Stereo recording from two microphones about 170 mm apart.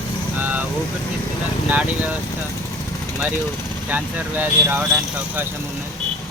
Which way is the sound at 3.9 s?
10° right (ahead or behind).